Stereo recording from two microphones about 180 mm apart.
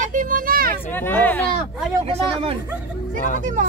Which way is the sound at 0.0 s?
45° right (ahead or behind).